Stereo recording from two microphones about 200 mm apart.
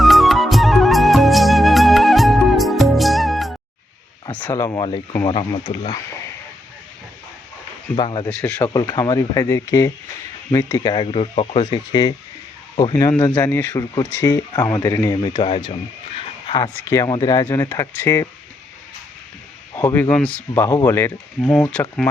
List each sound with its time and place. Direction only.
0.0 s music: centre (ahead or behind)
4.3 s speech: 10° left (ahead or behind)
7.9 s speech: 25° left (ahead or behind)
8.3 s speech: 5° left (ahead or behind)
8.7 s speech: 20° left (ahead or behind)
10.9 s speech: 30° left (ahead or behind)
16.1 s a sound: 25° left (ahead or behind)
16.6 s speech: 10° left (ahead or behind)
19.7 s speech: 15° left (ahead or behind)